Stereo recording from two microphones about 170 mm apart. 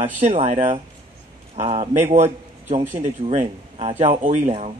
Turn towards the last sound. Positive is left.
turn(degrees=-40)  # may be behind; listen again after turning